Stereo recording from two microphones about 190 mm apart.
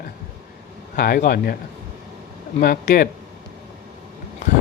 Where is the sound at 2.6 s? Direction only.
50° left (ahead or behind).